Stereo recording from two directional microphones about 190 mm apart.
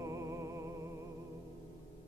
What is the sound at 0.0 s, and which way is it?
Music, 15° right (ahead or behind).